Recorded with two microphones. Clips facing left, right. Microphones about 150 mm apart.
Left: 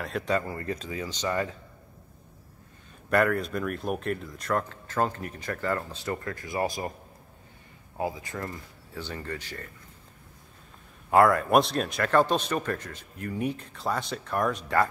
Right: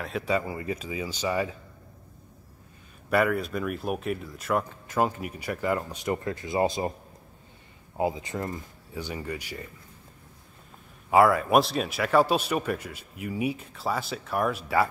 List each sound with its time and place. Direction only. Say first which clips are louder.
0.0 s speech: even; 5° right (ahead or behind)
3.1 s speech: even; 5° right (ahead or behind); by 6.9 s 20° right (ahead or behind)
8.0 s speech: right 4 dB; 20° right (ahead or behind)
11.1 s speech: even; 5° right (ahead or behind)